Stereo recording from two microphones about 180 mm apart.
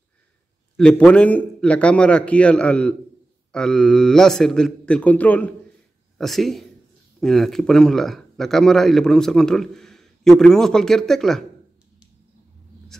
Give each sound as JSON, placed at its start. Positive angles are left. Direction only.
{"t": 0.7, "sound": "a man's voice", "side_deg": 5}